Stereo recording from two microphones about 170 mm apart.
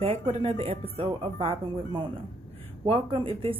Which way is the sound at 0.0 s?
35° right (ahead or behind).